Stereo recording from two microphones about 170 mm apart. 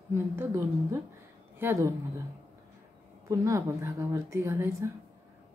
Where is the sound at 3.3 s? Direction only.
20° right (ahead or behind).